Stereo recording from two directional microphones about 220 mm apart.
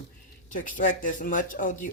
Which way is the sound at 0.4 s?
35° left (ahead or behind).